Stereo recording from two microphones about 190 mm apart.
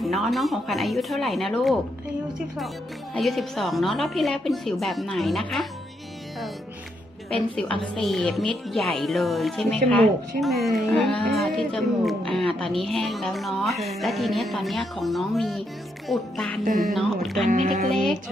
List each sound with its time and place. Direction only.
0.0 s a woman's voice: centre (ahead or behind)
7.8 s a woman's voice: centre (ahead or behind)
16.6 s speech: 45° right (ahead or behind)
16.9 s a woman's voice: centre (ahead or behind)
17.5 s speech: 45° right (ahead or behind)